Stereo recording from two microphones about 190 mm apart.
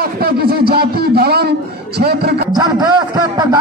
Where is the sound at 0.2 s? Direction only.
55° right (ahead or behind).